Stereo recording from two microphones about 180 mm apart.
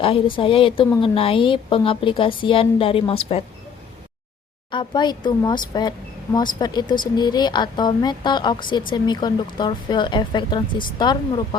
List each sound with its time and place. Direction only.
0.0 s speech: 30° left (ahead or behind)
4.7 s speech: 25° left (ahead or behind)